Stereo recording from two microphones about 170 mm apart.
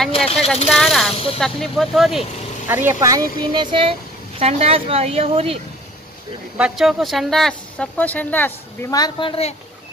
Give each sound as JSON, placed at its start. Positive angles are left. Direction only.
{"t": 0.1, "sound": "speech", "side_deg": 35}
{"t": 0.7, "sound": "speech", "side_deg": 0}
{"t": 2.7, "sound": "speech", "side_deg": -15}
{"t": 6.6, "sound": "a woman's voice", "side_deg": -5}